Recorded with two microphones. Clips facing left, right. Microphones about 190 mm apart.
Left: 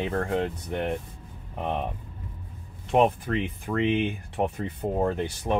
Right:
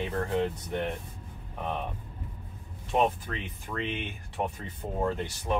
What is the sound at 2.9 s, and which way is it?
Speech, 60° left (ahead or behind).